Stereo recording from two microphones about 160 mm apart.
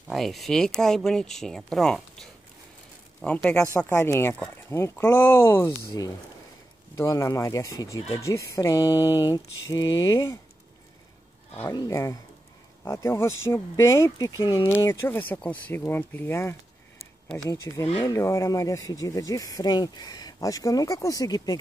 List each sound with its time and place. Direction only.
0.1 s speech: centre (ahead or behind)
3.7 s speech: 20° left (ahead or behind)
11.7 s speech: 25° left (ahead or behind)